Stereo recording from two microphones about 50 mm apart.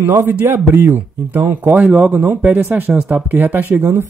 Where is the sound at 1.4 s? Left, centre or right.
Right.